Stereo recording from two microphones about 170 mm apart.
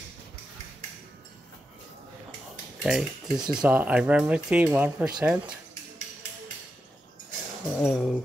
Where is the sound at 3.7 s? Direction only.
10° right (ahead or behind).